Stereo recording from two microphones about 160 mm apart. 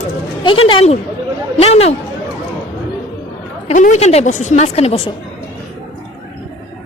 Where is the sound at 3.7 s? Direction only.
50° left (ahead or behind).